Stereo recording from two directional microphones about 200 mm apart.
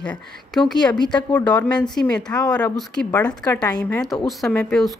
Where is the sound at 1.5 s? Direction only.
10° left (ahead or behind).